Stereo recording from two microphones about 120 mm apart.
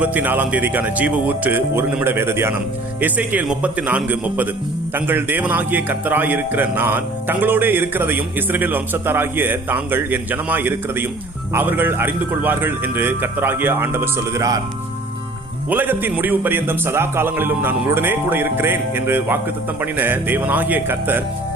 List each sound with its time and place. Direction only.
0.0 s a man's voice: 15° right (ahead or behind)
15.7 s a man's voice: 15° right (ahead or behind)